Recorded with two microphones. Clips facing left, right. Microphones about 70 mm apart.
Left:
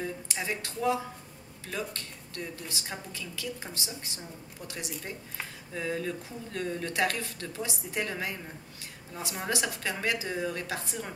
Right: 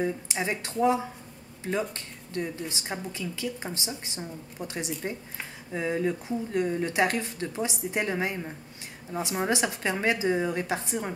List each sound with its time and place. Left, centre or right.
0.0 s speech: right